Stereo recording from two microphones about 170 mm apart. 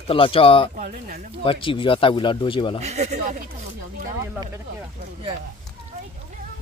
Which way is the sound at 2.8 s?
40° right (ahead or behind).